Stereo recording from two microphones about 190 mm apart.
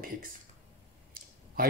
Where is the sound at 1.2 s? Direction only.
50° right (ahead or behind).